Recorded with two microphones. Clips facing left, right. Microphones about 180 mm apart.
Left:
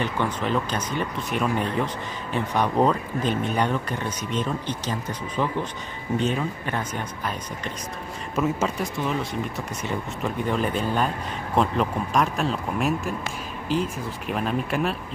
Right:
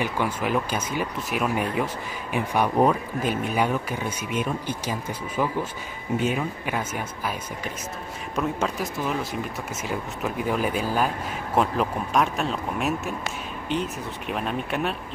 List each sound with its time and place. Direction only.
0.0 s speech: 10° right (ahead or behind)